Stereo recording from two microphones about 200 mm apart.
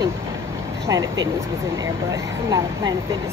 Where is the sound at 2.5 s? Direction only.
20° right (ahead or behind).